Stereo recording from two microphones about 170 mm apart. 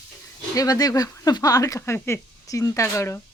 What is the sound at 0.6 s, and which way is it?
Speech, 20° left (ahead or behind).